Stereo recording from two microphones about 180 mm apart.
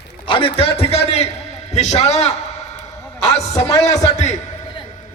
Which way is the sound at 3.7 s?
20° left (ahead or behind).